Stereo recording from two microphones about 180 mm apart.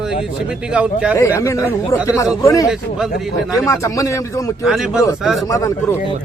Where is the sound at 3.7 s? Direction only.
20° left (ahead or behind).